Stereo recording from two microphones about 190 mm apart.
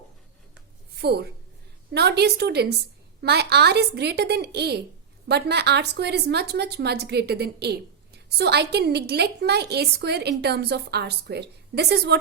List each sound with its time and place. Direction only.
1.0 s a woman's voice: 60° right (ahead or behind)